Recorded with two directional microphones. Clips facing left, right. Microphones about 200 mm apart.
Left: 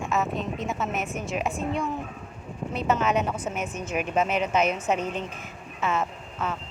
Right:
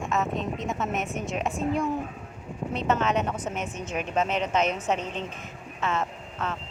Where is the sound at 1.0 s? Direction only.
35° right (ahead or behind).